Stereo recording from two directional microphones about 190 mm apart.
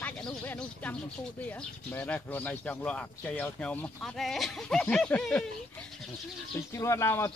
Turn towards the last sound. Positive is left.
turn(degrees=15)  # may be behind; listen again after turning